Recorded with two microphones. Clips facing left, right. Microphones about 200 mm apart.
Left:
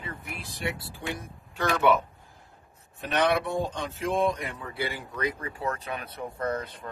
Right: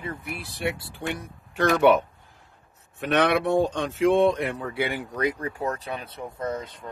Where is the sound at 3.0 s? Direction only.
70° right (ahead or behind).